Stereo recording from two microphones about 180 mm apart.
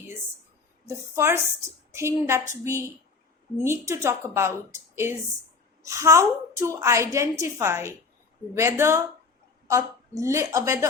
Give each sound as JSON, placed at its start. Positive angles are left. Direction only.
{"t": 0.9, "sound": "a woman's voice", "side_deg": -15}